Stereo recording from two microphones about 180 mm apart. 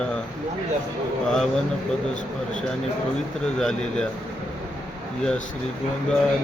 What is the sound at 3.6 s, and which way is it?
Speech, 5° left (ahead or behind).